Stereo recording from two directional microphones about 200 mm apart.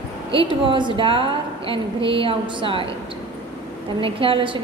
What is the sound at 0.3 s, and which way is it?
A woman's voice, 25° right (ahead or behind).